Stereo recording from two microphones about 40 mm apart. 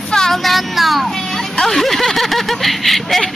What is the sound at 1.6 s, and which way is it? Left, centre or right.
Speech, centre.